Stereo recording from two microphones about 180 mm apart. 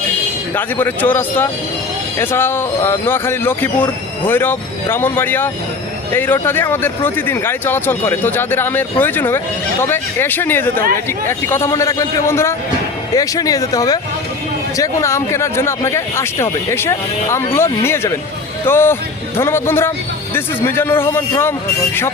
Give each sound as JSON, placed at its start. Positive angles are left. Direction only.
{"t": 0.5, "sound": "speech", "side_deg": 10}